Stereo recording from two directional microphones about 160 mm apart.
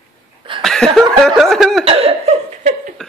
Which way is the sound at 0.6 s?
5° left (ahead or behind).